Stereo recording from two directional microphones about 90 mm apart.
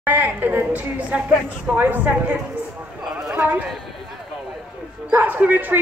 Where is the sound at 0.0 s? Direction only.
20° right (ahead or behind).